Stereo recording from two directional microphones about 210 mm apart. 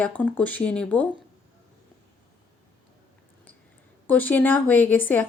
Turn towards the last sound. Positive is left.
turn(degrees=10)  # may be behind; listen again after turning